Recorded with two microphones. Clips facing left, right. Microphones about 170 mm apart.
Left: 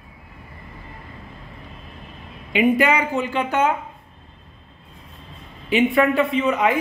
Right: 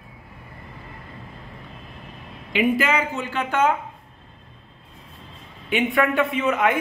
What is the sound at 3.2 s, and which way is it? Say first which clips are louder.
Speech: left 1 dB; 10° left (ahead or behind).